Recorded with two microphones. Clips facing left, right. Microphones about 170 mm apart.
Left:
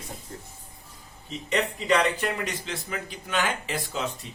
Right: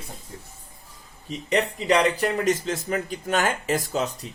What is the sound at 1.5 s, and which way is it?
Speech, 35° right (ahead or behind).